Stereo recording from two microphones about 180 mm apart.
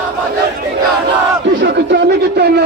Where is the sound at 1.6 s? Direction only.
80° right; by 2.6 s 65° right (ahead or behind).